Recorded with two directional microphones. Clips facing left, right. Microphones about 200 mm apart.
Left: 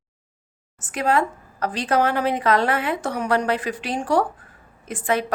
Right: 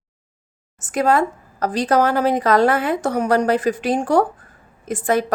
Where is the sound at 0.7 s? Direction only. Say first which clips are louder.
Right 4 dB; 45° right (ahead or behind).